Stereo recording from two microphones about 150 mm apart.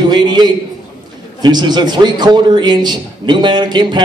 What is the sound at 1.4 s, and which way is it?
A man's voice, 30° right (ahead or behind).